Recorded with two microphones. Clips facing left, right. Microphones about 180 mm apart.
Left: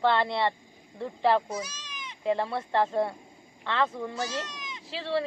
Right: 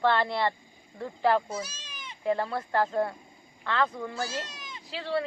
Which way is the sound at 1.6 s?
30° right (ahead or behind).